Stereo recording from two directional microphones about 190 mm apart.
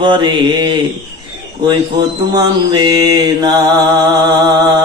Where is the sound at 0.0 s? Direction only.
25° right (ahead or behind).